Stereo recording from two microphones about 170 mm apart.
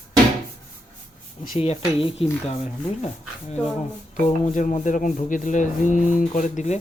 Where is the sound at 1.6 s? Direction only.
35° left (ahead or behind).